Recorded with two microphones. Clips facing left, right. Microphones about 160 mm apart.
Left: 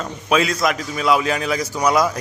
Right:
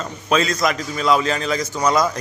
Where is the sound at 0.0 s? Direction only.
5° left (ahead or behind).